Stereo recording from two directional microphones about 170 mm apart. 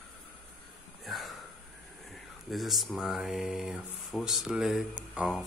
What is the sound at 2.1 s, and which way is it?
Speech, centre (ahead or behind).